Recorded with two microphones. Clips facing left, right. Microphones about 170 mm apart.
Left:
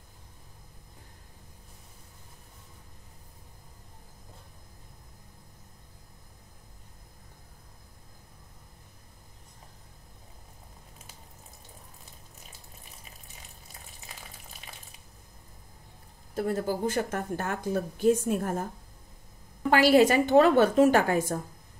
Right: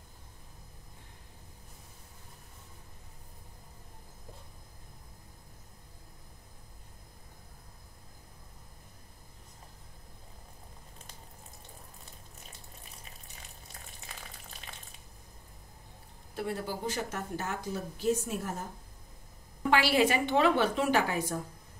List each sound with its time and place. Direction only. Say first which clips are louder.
13.3 s frying: even; centre (ahead or behind)
16.3 s speech: left 7 dB; 45° left (ahead or behind)
19.7 s speech: left 6 dB; 45° left (ahead or behind)